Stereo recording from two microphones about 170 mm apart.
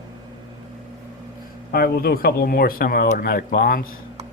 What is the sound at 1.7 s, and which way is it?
Speech, 65° left (ahead or behind).